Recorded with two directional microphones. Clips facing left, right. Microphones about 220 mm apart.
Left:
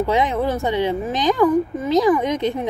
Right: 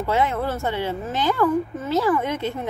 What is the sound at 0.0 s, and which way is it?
A woman's voice, 15° left (ahead or behind).